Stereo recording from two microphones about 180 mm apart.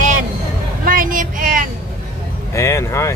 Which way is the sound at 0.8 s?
50° right (ahead or behind).